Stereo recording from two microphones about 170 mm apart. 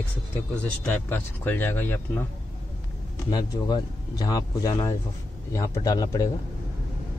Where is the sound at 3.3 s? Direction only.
25° left (ahead or behind).